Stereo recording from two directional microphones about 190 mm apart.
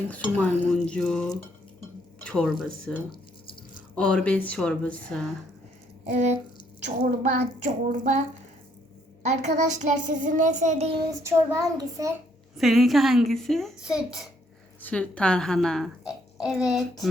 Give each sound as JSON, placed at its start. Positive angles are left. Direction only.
{"t": 0.1, "sound": "a woman's voice", "side_deg": 5}
{"t": 6.1, "sound": "speech", "side_deg": -40}
{"t": 9.2, "sound": "speech", "side_deg": -35}
{"t": 11.2, "sound": "a child's voice", "side_deg": -15}
{"t": 12.5, "sound": "a woman's voice", "side_deg": 0}